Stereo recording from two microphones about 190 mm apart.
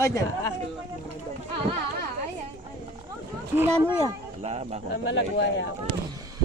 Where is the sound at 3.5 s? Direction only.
10° right (ahead or behind).